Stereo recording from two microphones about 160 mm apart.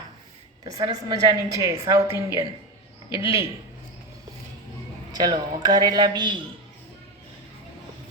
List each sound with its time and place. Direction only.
0.6 s a woman's voice: 25° right (ahead or behind)
5.1 s a woman's voice: 25° right (ahead or behind)